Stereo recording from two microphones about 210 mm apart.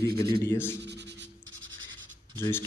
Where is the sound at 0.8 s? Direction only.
55° right (ahead or behind).